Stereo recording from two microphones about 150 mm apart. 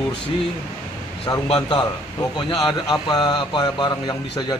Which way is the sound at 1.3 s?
30° left (ahead or behind).